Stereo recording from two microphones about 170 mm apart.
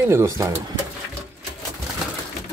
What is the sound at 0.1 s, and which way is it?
Speech, 15° right (ahead or behind).